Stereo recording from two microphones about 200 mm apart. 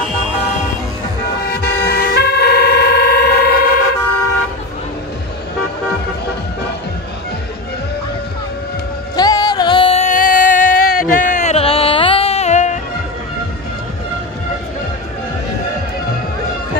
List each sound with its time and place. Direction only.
1.4 s vehicle: 55° left (ahead or behind)
9.1 s music: 20° left (ahead or behind); by 12.8 s 35° left (ahead or behind)